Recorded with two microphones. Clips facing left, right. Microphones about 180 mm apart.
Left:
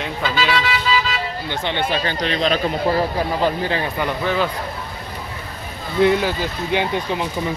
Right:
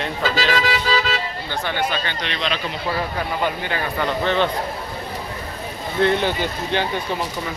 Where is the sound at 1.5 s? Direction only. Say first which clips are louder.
Left 1 dB; 20° left (ahead or behind).